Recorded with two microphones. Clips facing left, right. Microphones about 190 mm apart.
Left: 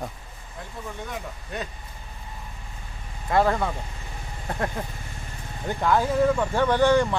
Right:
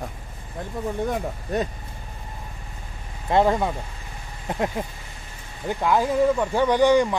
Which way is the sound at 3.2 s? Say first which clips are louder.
Right 2 dB; 20° right (ahead or behind).